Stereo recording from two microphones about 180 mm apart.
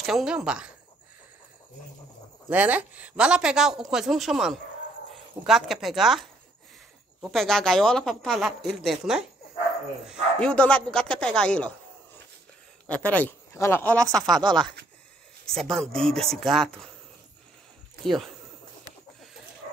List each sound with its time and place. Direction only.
0.0 s a woman's voice: 5° right (ahead or behind)
2.5 s a woman's voice: 10° right (ahead or behind)
10.0 s a woman's voice: centre (ahead or behind)
12.8 s a woman's voice: 10° left (ahead or behind)
14.4 s speech: 25° right (ahead or behind)
15.4 s a woman's voice: 5° left (ahead or behind)
18.0 s a woman's voice: centre (ahead or behind)